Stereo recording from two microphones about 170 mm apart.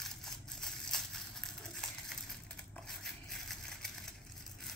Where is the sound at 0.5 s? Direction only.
5° left (ahead or behind).